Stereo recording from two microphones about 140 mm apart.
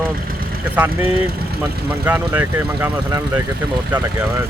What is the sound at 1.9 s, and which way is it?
Speech, 15° right (ahead or behind).